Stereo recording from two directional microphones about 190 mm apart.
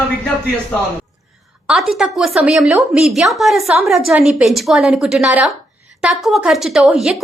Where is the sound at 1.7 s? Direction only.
Centre (ahead or behind).